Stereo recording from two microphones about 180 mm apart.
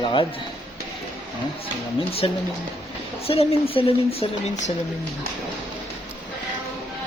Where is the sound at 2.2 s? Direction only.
30° left (ahead or behind).